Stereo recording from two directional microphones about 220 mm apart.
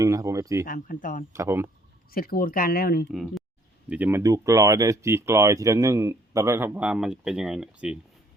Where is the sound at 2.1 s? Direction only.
40° left (ahead or behind).